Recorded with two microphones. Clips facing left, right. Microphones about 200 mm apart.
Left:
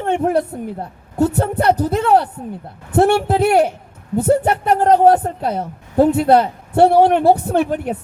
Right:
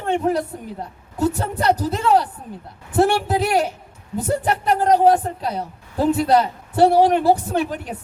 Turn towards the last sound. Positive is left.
turn(degrees=55)  # may be behind; listen again after turning